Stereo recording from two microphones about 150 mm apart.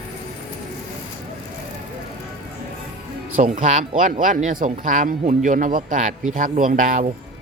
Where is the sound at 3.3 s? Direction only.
65° right (ahead or behind).